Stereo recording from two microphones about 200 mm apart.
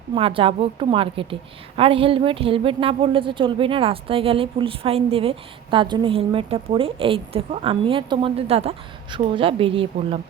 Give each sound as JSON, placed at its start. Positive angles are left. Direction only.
{"t": 0.1, "sound": "a woman's voice", "side_deg": -25}